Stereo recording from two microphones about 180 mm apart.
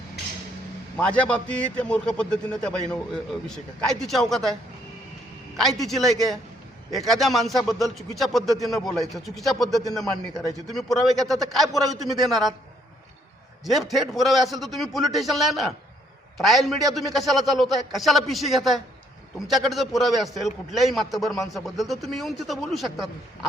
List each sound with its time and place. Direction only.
0.9 s a man's voice: 5° left (ahead or behind)
5.5 s a man's voice: centre (ahead or behind)
13.7 s a man's voice: centre (ahead or behind)